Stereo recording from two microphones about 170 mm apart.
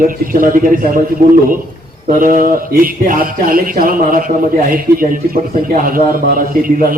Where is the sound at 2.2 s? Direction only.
55° right (ahead or behind).